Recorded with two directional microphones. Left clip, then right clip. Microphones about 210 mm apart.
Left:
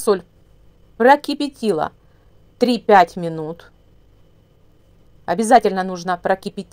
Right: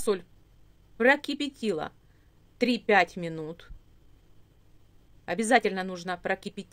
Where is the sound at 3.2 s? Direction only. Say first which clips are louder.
Left 10 dB; 15° right (ahead or behind).